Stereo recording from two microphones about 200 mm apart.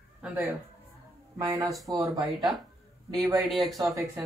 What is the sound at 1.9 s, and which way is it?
Speech, 20° right (ahead or behind).